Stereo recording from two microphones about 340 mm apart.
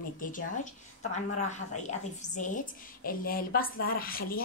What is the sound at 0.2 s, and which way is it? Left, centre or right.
A woman's voice, left.